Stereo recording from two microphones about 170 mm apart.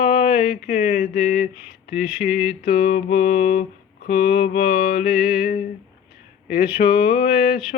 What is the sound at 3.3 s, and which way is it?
Speech, 50° left (ahead or behind).